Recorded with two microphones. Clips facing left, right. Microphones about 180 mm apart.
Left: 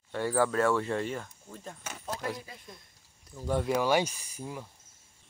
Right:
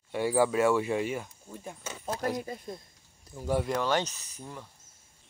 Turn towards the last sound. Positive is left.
turn(degrees=10)  # may be behind; listen again after turning